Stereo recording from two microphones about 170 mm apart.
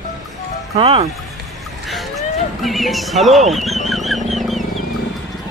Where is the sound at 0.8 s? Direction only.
35° right (ahead or behind).